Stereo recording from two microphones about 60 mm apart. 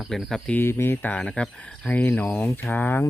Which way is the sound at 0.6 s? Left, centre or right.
Left.